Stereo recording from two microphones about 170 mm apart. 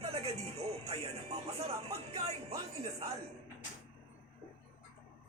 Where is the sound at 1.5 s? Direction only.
35° right (ahead or behind).